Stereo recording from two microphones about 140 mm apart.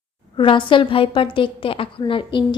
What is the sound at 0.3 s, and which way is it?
A woman's voice, 35° left (ahead or behind).